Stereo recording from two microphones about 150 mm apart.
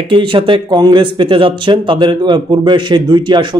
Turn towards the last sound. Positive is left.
turn(degrees=-30)  # may be behind; listen again after turning